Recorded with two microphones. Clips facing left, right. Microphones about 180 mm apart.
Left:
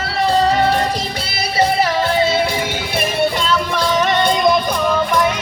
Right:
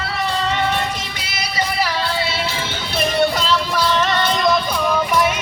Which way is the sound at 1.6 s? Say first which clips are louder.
Left 6 dB; 45° left (ahead or behind).